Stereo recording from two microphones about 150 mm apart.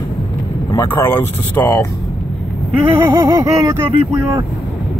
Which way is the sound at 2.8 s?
15° right (ahead or behind).